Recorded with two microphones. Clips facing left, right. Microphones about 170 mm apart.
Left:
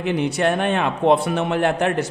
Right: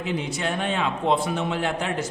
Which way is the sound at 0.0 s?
65° left (ahead or behind).